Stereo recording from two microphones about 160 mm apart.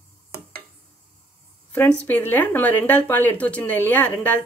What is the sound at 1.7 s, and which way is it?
A woman's voice, 10° left (ahead or behind).